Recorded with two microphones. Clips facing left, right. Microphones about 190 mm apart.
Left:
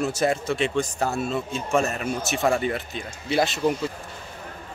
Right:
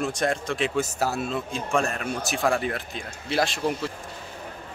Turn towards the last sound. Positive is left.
turn(degrees=0)  # may be behind; listen again after turning